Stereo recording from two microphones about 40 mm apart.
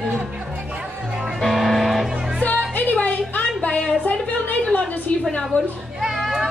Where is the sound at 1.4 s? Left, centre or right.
Centre.